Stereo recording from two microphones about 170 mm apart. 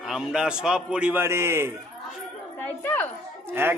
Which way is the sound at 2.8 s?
10° left (ahead or behind).